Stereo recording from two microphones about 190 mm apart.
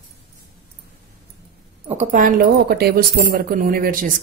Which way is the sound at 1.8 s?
35° right (ahead or behind).